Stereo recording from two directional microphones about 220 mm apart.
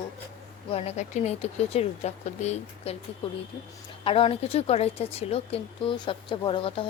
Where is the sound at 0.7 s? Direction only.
30° left (ahead or behind).